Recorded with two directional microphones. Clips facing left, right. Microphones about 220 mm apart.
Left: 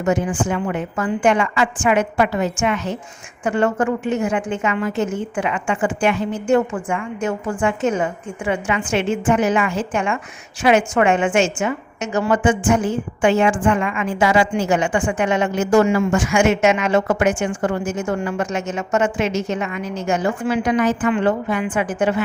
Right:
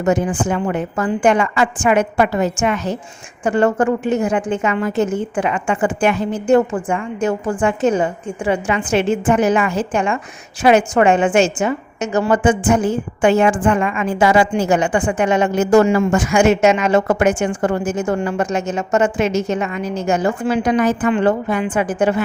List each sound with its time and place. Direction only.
0.0 s a woman's voice: 40° right (ahead or behind)